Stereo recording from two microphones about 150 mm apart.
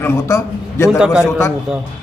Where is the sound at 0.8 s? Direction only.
5° right (ahead or behind).